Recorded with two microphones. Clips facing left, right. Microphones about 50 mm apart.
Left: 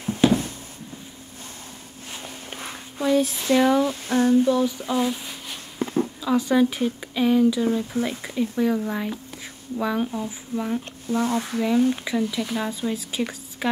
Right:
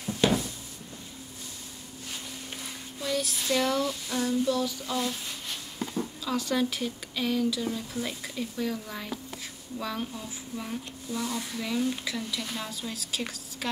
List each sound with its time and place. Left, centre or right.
0.2 s a sound: centre
2.5 s a sound: left
3.1 s speech: left
3.9 s female singing: left
4.5 s speech: left
5.8 s a sound: left
6.2 s speech: left
11.1 s speech: left
11.8 s speech: left